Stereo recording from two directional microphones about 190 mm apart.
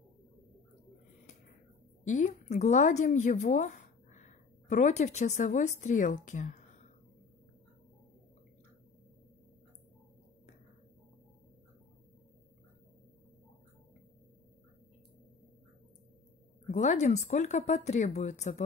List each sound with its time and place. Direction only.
2.0 s speech: 40° left (ahead or behind)
16.7 s speech: 40° left (ahead or behind)